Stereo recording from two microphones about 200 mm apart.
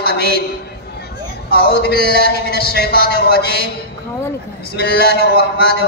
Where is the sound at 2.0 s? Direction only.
50° right (ahead or behind).